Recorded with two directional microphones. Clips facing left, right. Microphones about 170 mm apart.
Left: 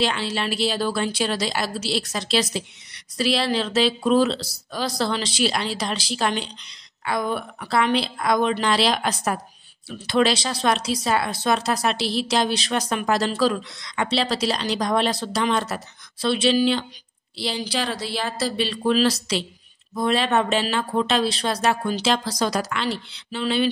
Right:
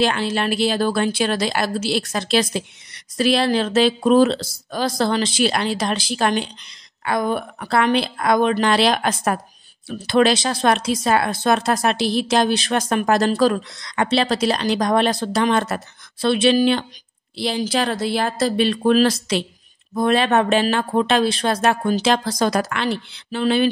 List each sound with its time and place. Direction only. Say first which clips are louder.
0.0 s a woman's voice: right 4 dB; 50° right (ahead or behind)